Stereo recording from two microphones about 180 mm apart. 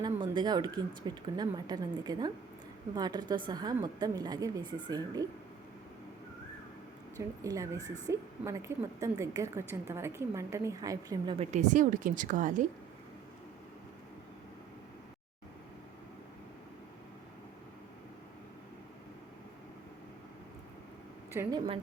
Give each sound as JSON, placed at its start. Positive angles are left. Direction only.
{"t": 0.3, "sound": "a woman's voice", "side_deg": -25}
{"t": 7.2, "sound": "a woman's voice", "side_deg": -20}
{"t": 11.3, "sound": "a woman's voice", "side_deg": -40}
{"t": 21.3, "sound": "a woman's voice", "side_deg": -15}